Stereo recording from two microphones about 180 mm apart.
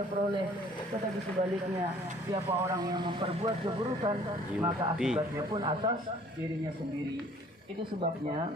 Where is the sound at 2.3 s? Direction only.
25° right (ahead or behind).